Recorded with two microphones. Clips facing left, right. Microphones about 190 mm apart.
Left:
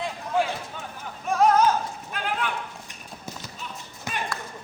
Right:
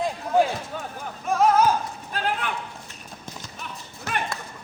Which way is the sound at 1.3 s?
5° right (ahead or behind).